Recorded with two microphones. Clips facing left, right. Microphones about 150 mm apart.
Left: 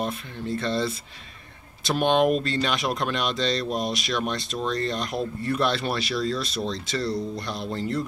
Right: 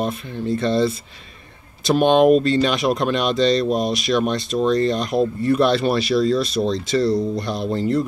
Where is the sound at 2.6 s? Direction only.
15° right (ahead or behind).